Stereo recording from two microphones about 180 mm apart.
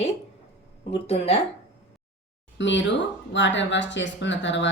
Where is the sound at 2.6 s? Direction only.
90° left.